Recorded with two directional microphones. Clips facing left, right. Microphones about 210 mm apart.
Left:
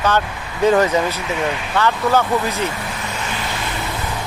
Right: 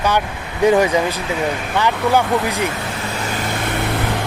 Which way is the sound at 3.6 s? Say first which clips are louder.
Right 5 dB; 60° right (ahead or behind).